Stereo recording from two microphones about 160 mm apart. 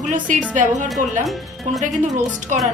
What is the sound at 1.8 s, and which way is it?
Speech, 50° right (ahead or behind).